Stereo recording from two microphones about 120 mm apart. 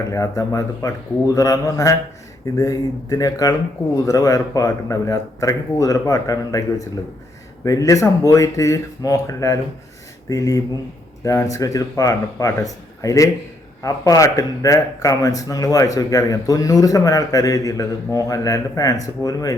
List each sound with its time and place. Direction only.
0.1 s speech: 25° left (ahead or behind)